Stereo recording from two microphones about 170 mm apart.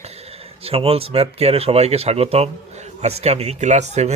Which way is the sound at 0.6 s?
35° right (ahead or behind).